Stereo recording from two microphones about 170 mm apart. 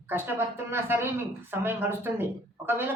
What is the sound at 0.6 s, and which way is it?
A woman's voice, 15° right (ahead or behind).